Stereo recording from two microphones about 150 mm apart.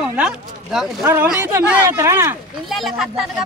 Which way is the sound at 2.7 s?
Centre (ahead or behind).